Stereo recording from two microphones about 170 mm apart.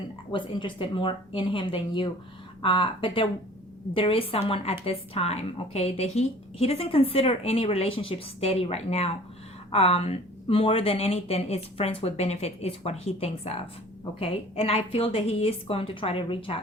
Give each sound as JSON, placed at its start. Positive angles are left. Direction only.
{"t": 0.3, "sound": "a woman's voice", "side_deg": 30}